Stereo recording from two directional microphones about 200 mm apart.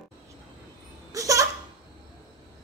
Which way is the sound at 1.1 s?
15° right (ahead or behind).